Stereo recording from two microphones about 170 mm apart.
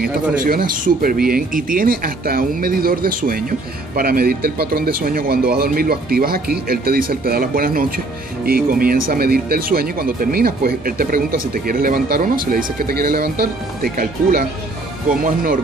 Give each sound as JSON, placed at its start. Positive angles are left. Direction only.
{"t": 0.4, "sound": "speech", "side_deg": -60}